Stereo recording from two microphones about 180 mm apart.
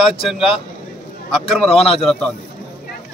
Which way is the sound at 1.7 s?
35° left (ahead or behind).